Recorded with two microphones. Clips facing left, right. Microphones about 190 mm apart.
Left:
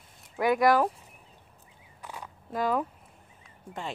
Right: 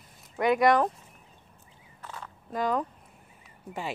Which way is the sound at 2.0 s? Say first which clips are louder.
Left 1 dB; 15° left (ahead or behind).